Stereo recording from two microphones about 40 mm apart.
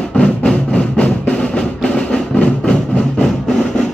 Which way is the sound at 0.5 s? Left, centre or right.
Left.